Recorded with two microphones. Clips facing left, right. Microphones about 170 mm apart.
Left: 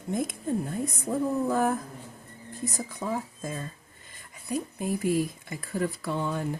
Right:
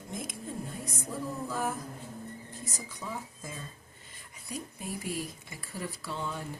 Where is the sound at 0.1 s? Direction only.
60° left (ahead or behind).